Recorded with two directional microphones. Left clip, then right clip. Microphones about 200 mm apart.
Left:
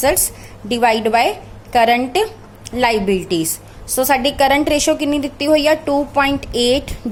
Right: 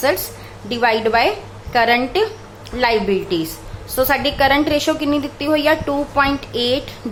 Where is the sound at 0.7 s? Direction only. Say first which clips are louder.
Left 2 dB; 30° left (ahead or behind).